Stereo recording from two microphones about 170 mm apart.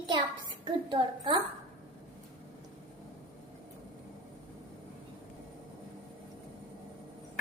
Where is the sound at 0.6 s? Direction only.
25° right (ahead or behind).